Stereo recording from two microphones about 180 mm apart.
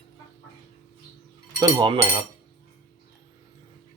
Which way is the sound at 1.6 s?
20° right (ahead or behind).